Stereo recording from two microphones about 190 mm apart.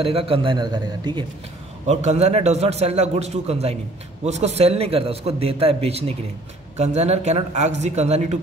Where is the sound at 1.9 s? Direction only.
35° right (ahead or behind).